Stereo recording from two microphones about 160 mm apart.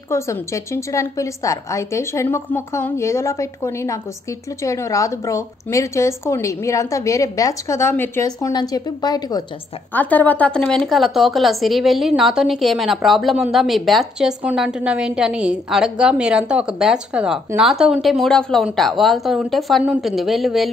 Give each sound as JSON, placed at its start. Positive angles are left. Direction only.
{"t": 0.1, "sound": "a woman's voice", "side_deg": 20}
{"t": 9.9, "sound": "speech", "side_deg": 10}